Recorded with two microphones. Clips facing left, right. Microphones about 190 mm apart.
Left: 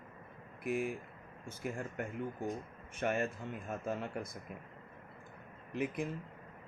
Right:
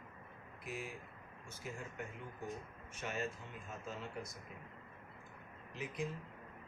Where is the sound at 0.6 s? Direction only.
55° left (ahead or behind).